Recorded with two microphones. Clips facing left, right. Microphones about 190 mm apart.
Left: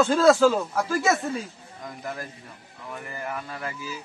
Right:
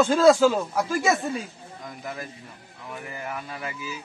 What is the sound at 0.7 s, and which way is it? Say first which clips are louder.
Speech: even; 15° right (ahead or behind).